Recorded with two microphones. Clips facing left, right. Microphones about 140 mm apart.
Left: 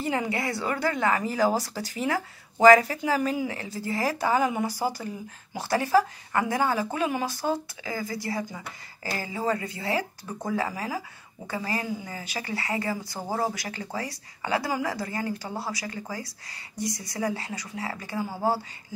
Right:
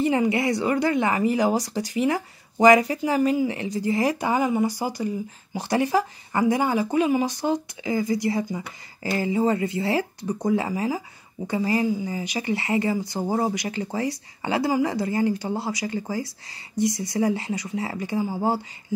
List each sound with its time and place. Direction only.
0.3 s speech: 20° right (ahead or behind)
3.5 s speech: 15° right (ahead or behind)